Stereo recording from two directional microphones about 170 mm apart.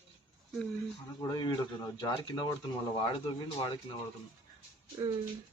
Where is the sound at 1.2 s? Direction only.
25° left (ahead or behind).